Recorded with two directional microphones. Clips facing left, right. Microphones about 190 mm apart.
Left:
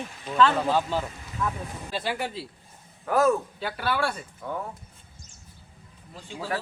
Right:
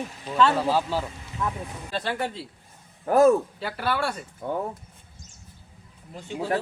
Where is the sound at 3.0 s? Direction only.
25° right (ahead or behind).